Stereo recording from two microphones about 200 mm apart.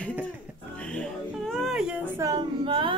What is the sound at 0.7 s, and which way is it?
Music, 5° left (ahead or behind).